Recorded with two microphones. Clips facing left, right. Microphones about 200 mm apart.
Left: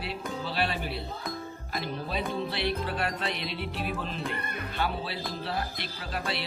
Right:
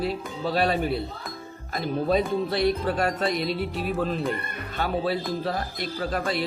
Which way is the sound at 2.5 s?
40° right (ahead or behind).